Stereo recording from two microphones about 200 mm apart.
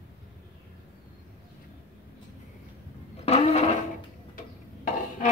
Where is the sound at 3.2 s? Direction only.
30° left (ahead or behind).